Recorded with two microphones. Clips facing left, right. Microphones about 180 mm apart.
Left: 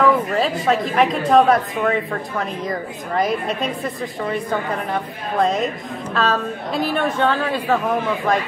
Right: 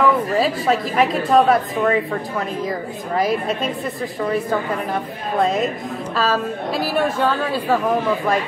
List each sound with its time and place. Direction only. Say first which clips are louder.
0.0 s a woman's voice: even; centre (ahead or behind)
3.2 s a woman's voice: right 1 dB; centre (ahead or behind)
5.4 s a woman's voice: even; centre (ahead or behind)